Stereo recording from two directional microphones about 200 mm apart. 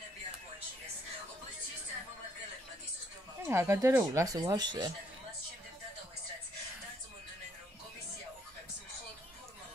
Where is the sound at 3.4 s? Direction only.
15° right (ahead or behind).